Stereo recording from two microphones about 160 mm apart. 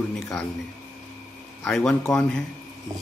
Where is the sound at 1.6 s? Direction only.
5° left (ahead or behind).